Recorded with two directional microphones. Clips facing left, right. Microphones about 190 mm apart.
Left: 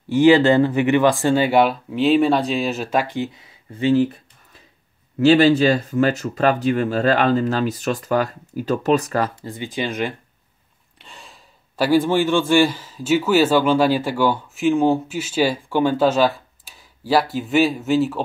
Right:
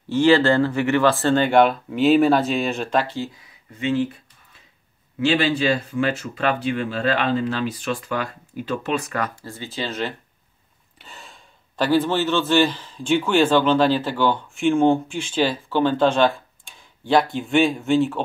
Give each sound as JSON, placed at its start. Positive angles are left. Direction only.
{"t": 0.1, "sound": "speech", "side_deg": 15}
{"t": 5.2, "sound": "speech", "side_deg": 40}
{"t": 9.3, "sound": "speech", "side_deg": 20}
{"t": 11.0, "sound": "speech", "side_deg": 0}